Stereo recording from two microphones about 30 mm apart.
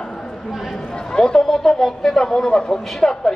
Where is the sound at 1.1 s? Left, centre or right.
Left.